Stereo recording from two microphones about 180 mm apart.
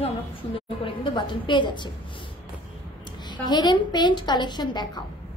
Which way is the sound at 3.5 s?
25° left (ahead or behind).